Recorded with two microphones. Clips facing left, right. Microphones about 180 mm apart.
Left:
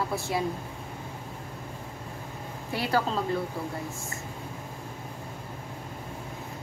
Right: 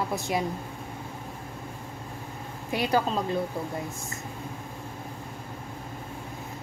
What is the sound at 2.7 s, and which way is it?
Speech, 20° right (ahead or behind).